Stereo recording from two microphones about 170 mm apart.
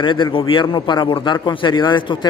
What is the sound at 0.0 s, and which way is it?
A man's voice, 30° left (ahead or behind).